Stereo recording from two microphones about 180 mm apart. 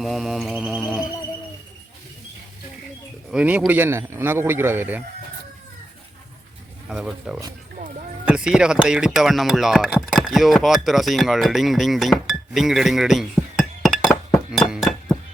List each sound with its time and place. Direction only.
0.0 s mantra: centre (ahead or behind)
3.3 s speech: 5° right (ahead or behind)
6.9 s mantra: centre (ahead or behind)
7.8 s a sound: 45° right (ahead or behind)
8.2 s speech: 5° right (ahead or behind)
14.5 s chink: centre (ahead or behind)